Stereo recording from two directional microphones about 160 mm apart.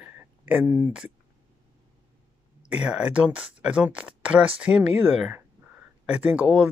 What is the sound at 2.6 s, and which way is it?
Speech, 5° right (ahead or behind).